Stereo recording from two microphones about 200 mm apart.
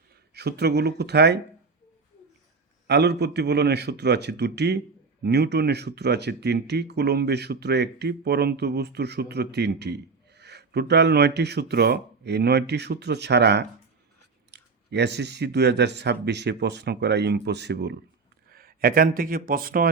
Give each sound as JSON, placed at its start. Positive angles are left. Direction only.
{"t": 0.3, "sound": "speech", "side_deg": -55}
{"t": 2.8, "sound": "speech", "side_deg": -55}